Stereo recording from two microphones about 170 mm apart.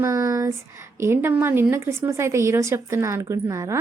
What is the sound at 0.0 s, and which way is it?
Speech, 20° right (ahead or behind).